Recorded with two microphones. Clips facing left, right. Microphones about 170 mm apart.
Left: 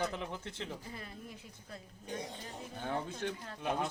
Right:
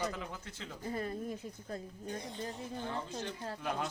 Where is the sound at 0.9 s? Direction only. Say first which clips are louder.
Right 10 dB; 45° right (ahead or behind).